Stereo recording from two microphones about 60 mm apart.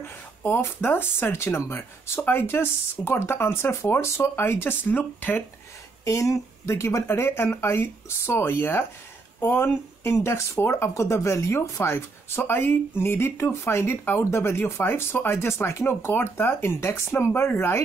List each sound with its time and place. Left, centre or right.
0.0 s speech: left
6.0 s speech: left
11.9 s speech: left